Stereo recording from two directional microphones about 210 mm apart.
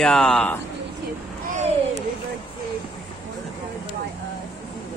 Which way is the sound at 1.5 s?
35° right (ahead or behind).